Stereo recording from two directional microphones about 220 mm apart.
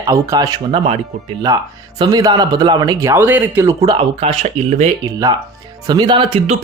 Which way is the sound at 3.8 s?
25° right (ahead or behind).